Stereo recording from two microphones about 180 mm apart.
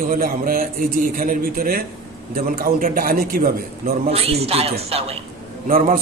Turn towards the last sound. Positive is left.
turn(degrees=-50)  # may be behind; listen again after turning